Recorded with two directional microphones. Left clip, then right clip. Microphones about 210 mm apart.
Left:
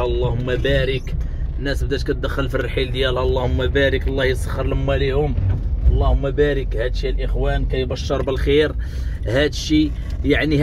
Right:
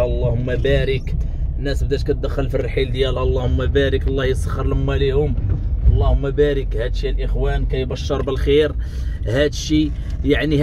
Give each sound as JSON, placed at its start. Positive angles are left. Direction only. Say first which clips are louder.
{"t": 0.7, "sound": "speech", "louder": "right 1 dB", "side_deg": -20}
{"t": 1.6, "sound": "speech", "louder": "right 1 dB", "side_deg": -10}
{"t": 2.7, "sound": "speech", "louder": "even", "side_deg": -25}